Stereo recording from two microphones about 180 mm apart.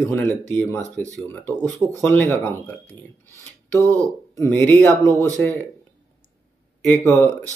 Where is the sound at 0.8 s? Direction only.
15° right (ahead or behind).